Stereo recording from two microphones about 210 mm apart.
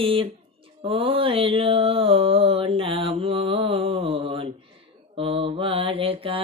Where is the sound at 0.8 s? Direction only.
25° right (ahead or behind).